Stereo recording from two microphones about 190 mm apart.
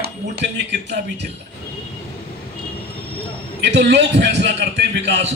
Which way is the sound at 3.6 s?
65° right (ahead or behind).